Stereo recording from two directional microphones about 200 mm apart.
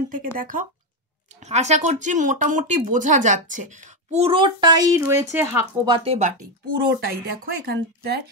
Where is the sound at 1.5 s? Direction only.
35° right (ahead or behind).